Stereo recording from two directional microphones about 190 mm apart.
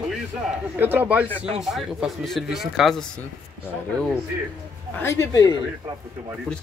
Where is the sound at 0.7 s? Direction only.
10° right (ahead or behind).